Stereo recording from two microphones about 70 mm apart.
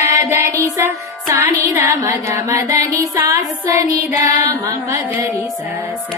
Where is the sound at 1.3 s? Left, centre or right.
Right.